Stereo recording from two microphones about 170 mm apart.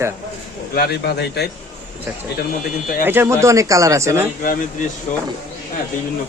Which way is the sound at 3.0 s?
10° right (ahead or behind).